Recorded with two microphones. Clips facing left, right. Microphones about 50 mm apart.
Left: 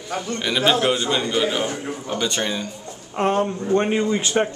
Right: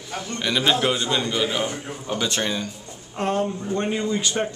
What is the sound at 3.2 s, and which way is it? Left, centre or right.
Speech, left.